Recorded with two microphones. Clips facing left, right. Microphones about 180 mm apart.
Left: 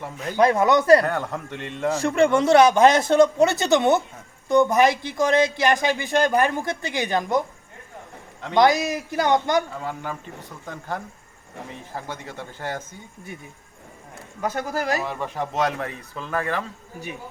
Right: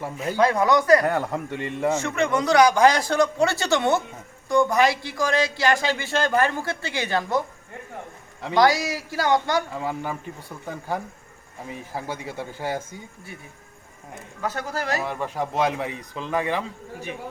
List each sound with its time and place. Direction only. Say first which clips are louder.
0.0 s a man's voice: right 3 dB; 5° right (ahead or behind)
0.3 s a man's voice: left 2 dB; 20° left (ahead or behind)
1.0 s a man's voice: right 2 dB; 10° right (ahead or behind)
2.0 s a man's voice: left 5 dB; 30° left (ahead or behind); by 7.4 s 15° left (ahead or behind)
8.5 s a man's voice: left 1 dB; 20° left (ahead or behind)
9.7 s a man's voice: right 2 dB; 10° right (ahead or behind)
14.4 s a man's voice: left 3 dB; 15° left (ahead or behind)
15.0 s a man's voice: right 1 dB; 10° right (ahead or behind)